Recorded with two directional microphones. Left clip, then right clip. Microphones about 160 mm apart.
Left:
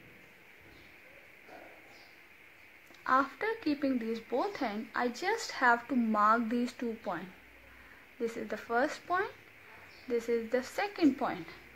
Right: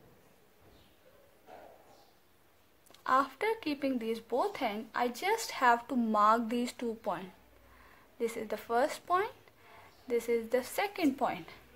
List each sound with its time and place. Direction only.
3.0 s speech: 30° right (ahead or behind)